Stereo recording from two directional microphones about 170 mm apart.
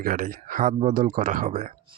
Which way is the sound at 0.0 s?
50° right (ahead or behind).